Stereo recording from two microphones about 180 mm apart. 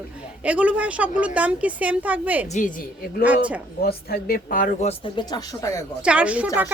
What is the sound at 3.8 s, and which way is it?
Speech, 60° left (ahead or behind).